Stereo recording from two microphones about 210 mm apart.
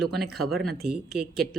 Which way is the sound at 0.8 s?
45° right (ahead or behind).